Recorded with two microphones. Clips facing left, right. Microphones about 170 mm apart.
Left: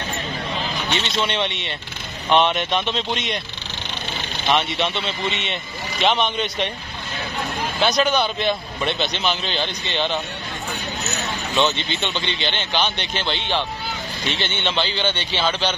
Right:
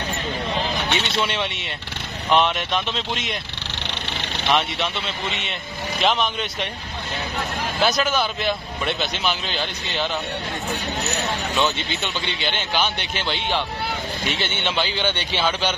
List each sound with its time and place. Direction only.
0.9 s speech: 5° right (ahead or behind)
4.5 s speech: centre (ahead or behind)
7.8 s speech: centre (ahead or behind)
11.5 s a man's voice: 5° right (ahead or behind)